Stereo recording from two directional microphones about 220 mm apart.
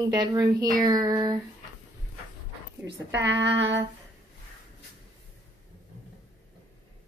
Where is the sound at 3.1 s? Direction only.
50° right (ahead or behind).